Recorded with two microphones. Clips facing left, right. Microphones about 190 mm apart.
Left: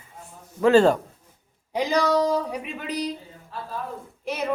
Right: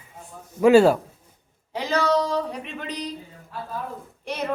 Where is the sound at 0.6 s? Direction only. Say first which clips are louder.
Right 2 dB; 10° right (ahead or behind).